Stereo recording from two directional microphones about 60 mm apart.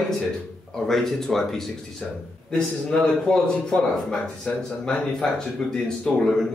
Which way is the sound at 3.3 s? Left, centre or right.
Centre.